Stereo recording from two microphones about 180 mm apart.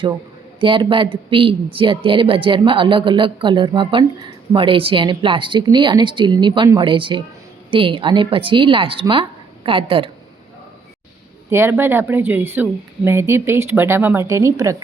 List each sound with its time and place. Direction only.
0.6 s speech: 30° right (ahead or behind)
11.5 s speech: 15° right (ahead or behind)